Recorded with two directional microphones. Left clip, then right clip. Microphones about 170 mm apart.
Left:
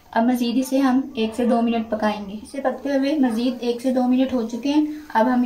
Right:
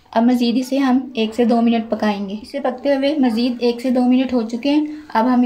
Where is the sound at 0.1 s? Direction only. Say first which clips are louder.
Right 4 dB; 60° right (ahead or behind).